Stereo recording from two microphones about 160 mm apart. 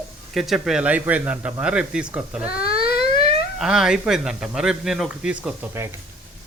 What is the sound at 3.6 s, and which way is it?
Speech, 5° right (ahead or behind).